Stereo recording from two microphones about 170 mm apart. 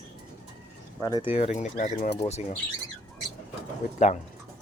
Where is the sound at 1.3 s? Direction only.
40° left (ahead or behind).